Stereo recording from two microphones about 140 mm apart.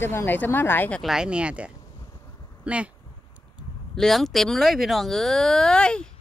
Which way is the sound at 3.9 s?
Centre (ahead or behind).